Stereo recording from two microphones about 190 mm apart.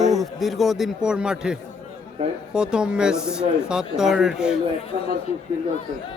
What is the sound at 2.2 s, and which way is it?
Speech, 30° right (ahead or behind).